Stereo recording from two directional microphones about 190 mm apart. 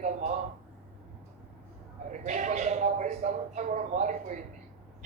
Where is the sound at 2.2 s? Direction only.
40° right (ahead or behind).